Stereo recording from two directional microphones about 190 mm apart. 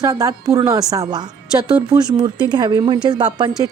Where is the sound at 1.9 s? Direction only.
25° right (ahead or behind).